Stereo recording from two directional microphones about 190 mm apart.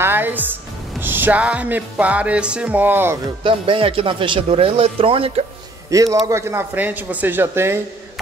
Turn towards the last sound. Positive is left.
turn(degrees=-15)  # may be behind; listen again after turning